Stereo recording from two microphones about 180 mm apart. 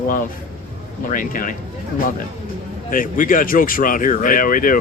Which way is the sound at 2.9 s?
50° left (ahead or behind).